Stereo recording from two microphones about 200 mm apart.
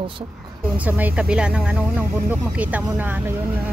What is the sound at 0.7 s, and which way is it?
Speech, 10° right (ahead or behind).